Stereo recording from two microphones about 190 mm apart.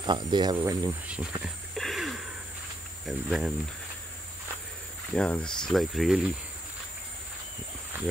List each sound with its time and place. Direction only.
0.0 s speech: 25° right (ahead or behind)
1.0 s insect: 5° right (ahead or behind)
3.1 s speech: centre (ahead or behind)
5.1 s speech: 5° left (ahead or behind)